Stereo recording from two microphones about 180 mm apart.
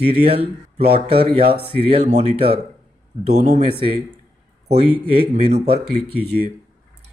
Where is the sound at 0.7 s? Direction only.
35° right (ahead or behind).